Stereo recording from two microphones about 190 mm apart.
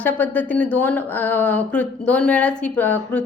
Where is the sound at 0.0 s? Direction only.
10° left (ahead or behind).